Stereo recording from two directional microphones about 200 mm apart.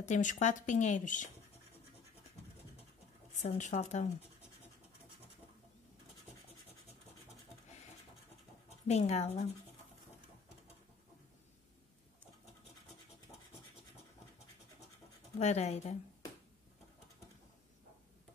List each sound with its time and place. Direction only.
0.0 s speech: 40° left (ahead or behind)
3.4 s speech: 35° left (ahead or behind)
8.8 s speech: 35° left (ahead or behind)
15.3 s speech: 35° left (ahead or behind)